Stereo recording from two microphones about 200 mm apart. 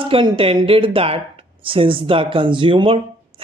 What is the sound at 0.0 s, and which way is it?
Speech, 25° right (ahead or behind).